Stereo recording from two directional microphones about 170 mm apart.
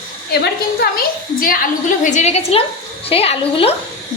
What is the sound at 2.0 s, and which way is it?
Speech, 45° left (ahead or behind).